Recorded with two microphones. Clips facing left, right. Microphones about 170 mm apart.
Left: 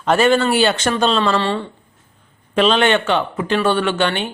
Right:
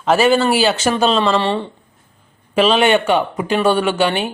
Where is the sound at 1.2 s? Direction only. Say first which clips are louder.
Right 2 dB; 20° right (ahead or behind).